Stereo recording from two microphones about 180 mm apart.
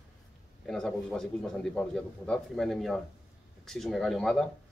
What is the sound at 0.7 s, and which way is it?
Speech, 5° left (ahead or behind).